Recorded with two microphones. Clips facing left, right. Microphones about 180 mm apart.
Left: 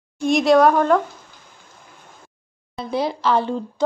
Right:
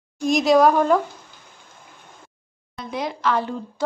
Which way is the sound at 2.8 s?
30° left (ahead or behind).